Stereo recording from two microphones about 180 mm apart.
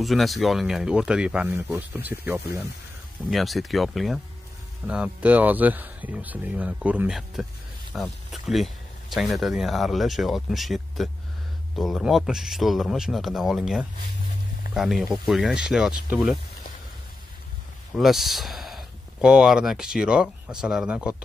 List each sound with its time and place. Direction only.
0.0 s speech: centre (ahead or behind)
3.3 s speech: centre (ahead or behind)
17.9 s speech: centre (ahead or behind)